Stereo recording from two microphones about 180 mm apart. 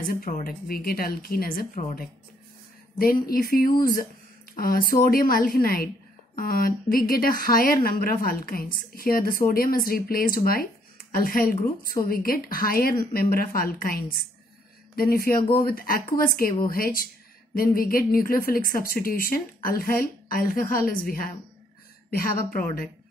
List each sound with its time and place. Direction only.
0.0 s speech: 55° left (ahead or behind)
3.0 s speech: 55° left (ahead or behind)